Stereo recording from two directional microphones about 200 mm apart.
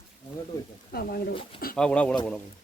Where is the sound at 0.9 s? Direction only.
50° left (ahead or behind).